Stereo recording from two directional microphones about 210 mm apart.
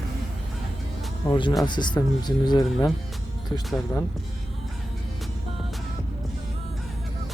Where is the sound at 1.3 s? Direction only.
20° left (ahead or behind).